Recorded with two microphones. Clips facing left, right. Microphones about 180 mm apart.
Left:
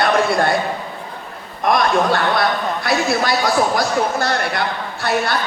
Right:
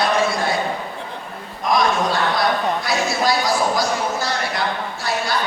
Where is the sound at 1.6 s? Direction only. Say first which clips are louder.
Left 3 dB; 60° left (ahead or behind).